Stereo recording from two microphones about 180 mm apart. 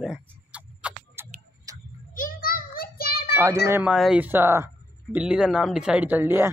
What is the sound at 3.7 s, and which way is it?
Speech, 5° right (ahead or behind).